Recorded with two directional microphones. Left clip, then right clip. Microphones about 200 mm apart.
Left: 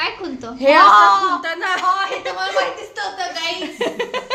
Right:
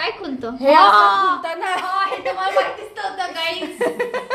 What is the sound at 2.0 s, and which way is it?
Speech, 35° left (ahead or behind).